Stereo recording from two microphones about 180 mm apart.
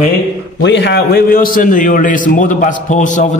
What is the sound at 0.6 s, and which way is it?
A man's voice, 75° left (ahead or behind).